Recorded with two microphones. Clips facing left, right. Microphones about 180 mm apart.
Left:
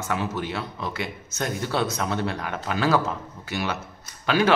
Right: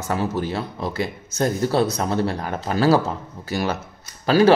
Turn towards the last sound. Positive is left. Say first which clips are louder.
# right 6 dB
turn(degrees=-35)  # may be behind; listen again after turning